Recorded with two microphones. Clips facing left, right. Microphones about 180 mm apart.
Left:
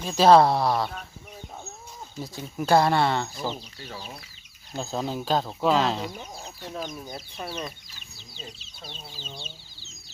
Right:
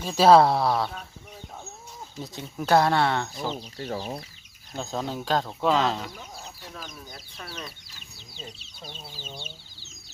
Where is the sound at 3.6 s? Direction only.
40° right (ahead or behind).